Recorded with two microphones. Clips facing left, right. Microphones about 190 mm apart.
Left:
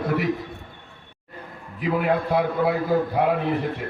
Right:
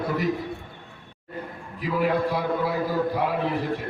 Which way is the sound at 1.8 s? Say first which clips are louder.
Left 1 dB; 55° left (ahead or behind).